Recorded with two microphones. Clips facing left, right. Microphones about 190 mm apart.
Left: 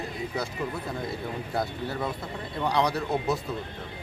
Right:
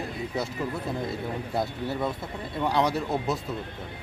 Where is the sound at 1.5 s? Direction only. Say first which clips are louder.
Right 1 dB; centre (ahead or behind).